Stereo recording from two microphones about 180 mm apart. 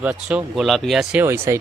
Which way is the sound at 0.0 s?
5° right (ahead or behind).